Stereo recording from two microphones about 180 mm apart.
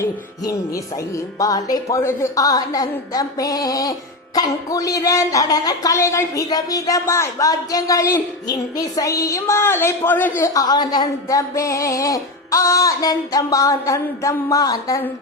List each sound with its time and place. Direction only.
0.0 s child singing: 15° left (ahead or behind)